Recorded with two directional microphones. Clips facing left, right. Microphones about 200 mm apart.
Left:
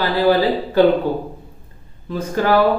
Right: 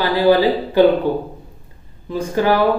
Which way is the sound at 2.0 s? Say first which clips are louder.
Right 2 dB; 15° right (ahead or behind).